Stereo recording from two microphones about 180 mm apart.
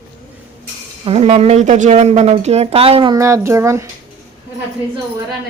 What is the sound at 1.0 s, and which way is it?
Speech, 35° right (ahead or behind).